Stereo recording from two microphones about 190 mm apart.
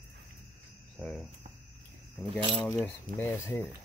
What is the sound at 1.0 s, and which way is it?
Speech, 5° left (ahead or behind).